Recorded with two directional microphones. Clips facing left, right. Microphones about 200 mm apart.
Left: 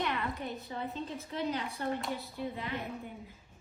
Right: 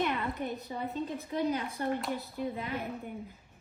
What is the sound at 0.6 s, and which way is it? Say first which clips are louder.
Speech: right 3 dB; 15° right (ahead or behind).